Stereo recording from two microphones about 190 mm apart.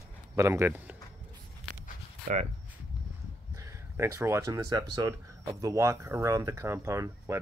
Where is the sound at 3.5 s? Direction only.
15° right (ahead or behind).